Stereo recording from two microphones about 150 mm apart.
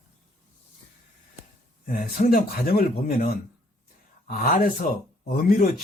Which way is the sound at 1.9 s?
70° left (ahead or behind).